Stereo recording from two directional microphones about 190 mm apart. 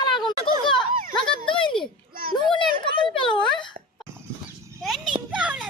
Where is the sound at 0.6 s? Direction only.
25° left (ahead or behind).